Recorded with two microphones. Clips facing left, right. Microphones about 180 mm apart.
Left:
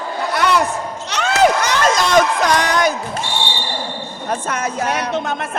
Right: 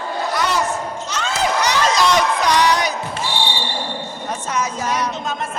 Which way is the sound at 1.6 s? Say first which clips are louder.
Even; 50° left (ahead or behind).